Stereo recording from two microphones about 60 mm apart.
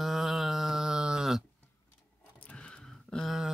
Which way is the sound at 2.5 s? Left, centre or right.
Centre.